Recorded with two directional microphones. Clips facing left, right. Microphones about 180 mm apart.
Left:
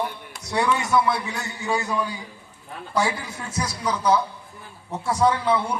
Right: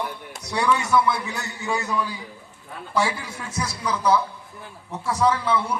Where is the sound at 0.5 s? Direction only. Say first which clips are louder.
Even; 20° left (ahead or behind).